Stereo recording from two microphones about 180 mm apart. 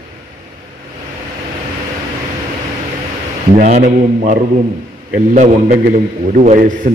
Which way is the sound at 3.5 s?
45° right (ahead or behind).